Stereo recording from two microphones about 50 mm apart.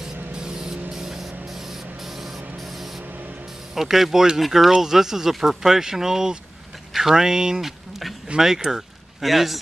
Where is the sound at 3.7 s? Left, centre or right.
Centre.